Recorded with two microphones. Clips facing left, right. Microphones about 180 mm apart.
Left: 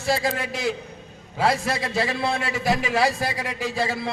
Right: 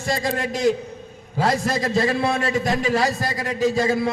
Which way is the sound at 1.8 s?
45° right (ahead or behind).